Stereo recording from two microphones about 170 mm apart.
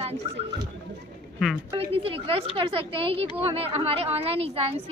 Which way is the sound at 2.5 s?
35° right (ahead or behind).